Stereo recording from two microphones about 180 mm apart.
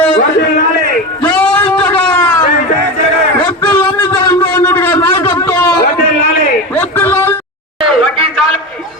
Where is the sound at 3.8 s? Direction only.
20° left (ahead or behind).